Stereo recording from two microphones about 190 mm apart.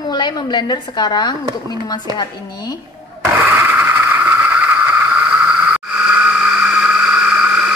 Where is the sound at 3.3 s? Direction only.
10° right (ahead or behind).